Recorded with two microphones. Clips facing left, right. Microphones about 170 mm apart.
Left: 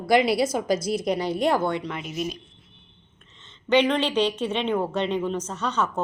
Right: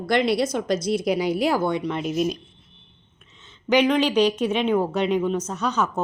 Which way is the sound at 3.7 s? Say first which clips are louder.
Right 2 dB; 10° right (ahead or behind).